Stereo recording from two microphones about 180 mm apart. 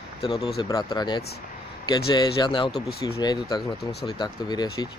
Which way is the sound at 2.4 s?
25° left (ahead or behind).